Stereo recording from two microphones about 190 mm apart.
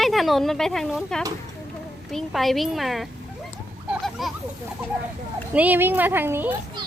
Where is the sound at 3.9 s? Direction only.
Centre (ahead or behind).